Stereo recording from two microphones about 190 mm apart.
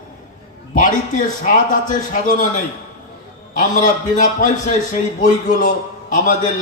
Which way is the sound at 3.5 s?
45° left (ahead or behind).